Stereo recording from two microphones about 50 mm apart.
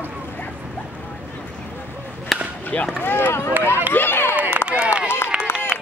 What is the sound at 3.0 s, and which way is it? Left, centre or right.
Speech, left.